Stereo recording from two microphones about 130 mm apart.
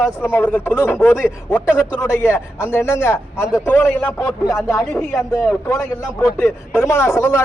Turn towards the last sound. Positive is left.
turn(degrees=20)  # may be behind; listen again after turning